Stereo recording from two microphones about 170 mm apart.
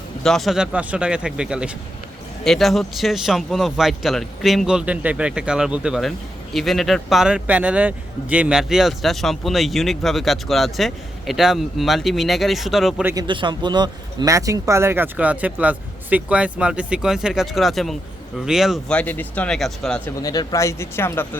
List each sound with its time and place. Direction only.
0.2 s speech: centre (ahead or behind)
13.2 s speech: 30° right (ahead or behind); by 20.0 s centre (ahead or behind)
20.2 s speech: 20° left (ahead or behind)